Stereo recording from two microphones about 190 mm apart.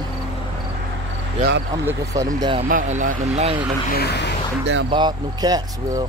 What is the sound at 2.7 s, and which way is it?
Speech, 40° right (ahead or behind).